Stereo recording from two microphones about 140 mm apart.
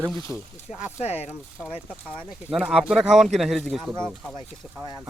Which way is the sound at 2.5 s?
Centre (ahead or behind).